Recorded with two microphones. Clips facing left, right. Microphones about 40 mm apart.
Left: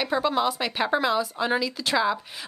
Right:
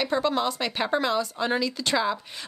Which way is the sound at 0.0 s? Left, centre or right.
Centre.